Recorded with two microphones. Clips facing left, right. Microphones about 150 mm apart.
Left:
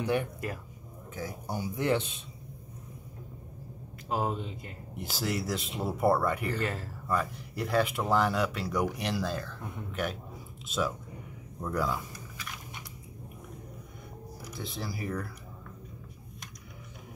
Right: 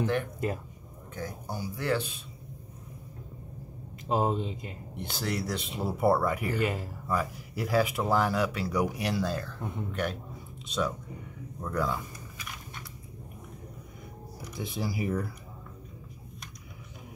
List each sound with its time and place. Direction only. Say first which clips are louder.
0.0 s speech: even; 10° left (ahead or behind)
1.5 s speech: left 2 dB; 20° left (ahead or behind)
4.1 s speech: right 4 dB; 25° right (ahead or behind)
4.9 s speech: even; centre (ahead or behind); by 7.0 s 15° right (ahead or behind)
7.1 s speech: even; 5° right (ahead or behind)
14.6 s speech: right 5 dB; 15° right (ahead or behind)